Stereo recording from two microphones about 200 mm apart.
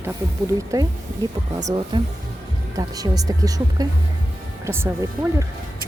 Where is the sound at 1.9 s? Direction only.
25° right (ahead or behind).